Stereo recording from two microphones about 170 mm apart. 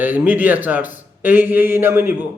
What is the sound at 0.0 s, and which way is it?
Speech, 10° right (ahead or behind).